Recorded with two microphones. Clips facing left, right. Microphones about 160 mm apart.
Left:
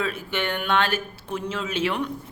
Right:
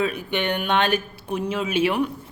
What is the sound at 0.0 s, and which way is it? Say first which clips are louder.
Speech: right 3 dB; 15° right (ahead or behind).